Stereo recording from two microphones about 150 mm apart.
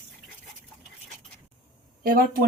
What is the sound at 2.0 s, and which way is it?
Speech, 75° right (ahead or behind).